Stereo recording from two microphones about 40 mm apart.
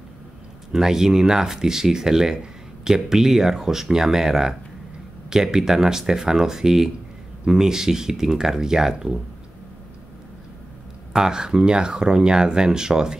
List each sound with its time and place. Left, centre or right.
0.7 s speech: centre
11.1 s speech: centre